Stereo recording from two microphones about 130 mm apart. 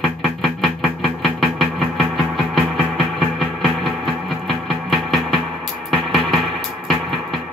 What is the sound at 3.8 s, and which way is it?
Music, centre (ahead or behind).